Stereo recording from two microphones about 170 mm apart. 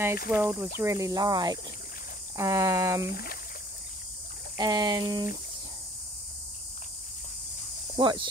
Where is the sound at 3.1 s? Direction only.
65° left (ahead or behind).